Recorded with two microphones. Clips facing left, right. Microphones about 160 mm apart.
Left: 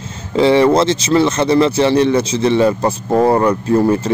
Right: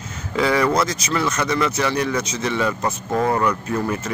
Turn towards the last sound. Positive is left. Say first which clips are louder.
# left 9 dB
turn(degrees=35)  # may be behind; listen again after turning